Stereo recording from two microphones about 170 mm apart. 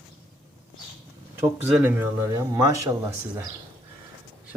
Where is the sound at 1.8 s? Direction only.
15° right (ahead or behind).